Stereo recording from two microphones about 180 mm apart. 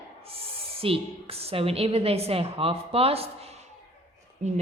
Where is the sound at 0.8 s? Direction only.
30° right (ahead or behind).